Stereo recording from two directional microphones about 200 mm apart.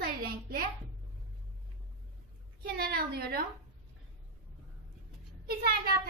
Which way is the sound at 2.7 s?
50° right (ahead or behind).